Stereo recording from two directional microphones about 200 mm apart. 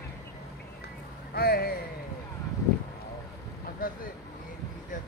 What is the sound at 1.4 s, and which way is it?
Speech, 50° left (ahead or behind).